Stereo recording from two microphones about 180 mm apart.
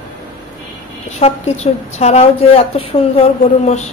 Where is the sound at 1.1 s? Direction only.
35° left (ahead or behind).